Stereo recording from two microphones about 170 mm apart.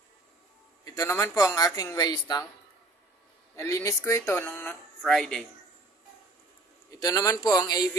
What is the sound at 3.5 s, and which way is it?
Speech, 15° left (ahead or behind).